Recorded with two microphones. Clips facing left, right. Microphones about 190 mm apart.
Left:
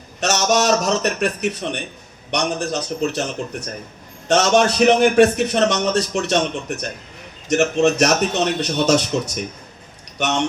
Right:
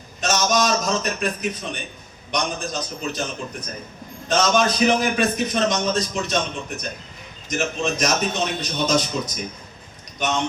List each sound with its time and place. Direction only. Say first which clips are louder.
0.2 s a man's voice: left 3 dB; 70° left (ahead or behind)